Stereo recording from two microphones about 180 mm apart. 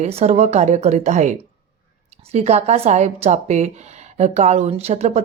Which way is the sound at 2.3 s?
35° right (ahead or behind).